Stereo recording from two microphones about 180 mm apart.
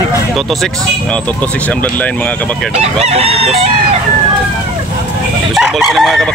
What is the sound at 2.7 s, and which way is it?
Chicken, 35° right (ahead or behind).